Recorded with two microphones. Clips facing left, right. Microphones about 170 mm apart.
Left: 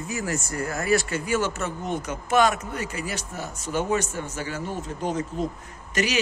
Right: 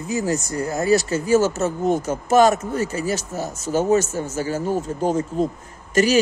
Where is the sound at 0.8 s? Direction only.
40° right (ahead or behind).